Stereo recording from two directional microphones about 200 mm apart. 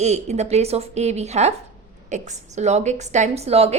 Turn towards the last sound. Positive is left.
turn(degrees=-30)  # may be behind; listen again after turning